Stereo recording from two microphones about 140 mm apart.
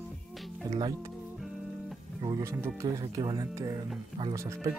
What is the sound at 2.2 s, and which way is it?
Speech, 25° right (ahead or behind).